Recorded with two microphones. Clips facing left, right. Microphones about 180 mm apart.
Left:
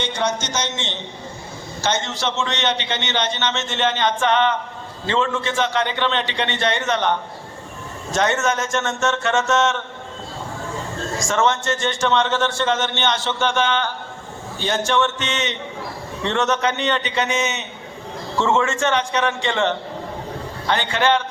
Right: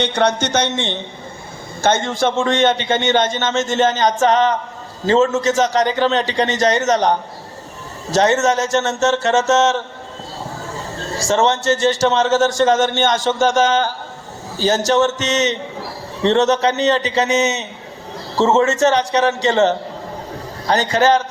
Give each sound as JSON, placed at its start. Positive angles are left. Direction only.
{"t": 0.0, "sound": "a man's voice", "side_deg": -65}